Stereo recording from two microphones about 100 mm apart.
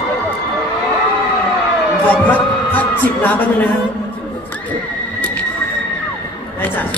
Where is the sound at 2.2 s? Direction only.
15° left (ahead or behind).